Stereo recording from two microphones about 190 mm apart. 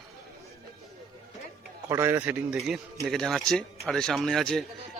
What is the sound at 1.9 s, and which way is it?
A man's voice, 15° right (ahead or behind).